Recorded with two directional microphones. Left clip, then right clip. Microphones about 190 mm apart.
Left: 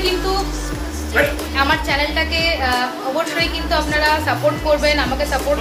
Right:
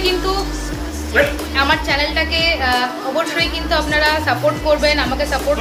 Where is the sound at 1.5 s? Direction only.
10° left (ahead or behind).